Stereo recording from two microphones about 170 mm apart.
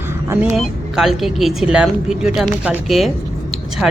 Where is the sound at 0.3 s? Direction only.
15° right (ahead or behind).